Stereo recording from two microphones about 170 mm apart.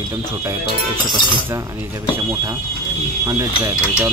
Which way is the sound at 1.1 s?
30° left (ahead or behind).